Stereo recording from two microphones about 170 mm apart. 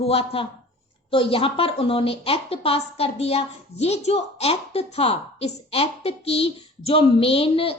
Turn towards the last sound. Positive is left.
turn(degrees=35)  # may be behind; listen again after turning